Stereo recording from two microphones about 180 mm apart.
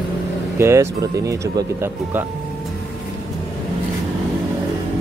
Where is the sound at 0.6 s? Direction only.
15° right (ahead or behind).